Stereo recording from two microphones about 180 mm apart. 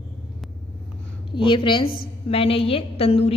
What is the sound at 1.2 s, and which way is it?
A woman's voice, 25° left (ahead or behind).